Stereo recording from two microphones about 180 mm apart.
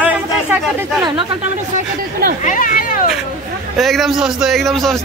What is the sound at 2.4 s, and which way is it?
Speech, 45° left (ahead or behind).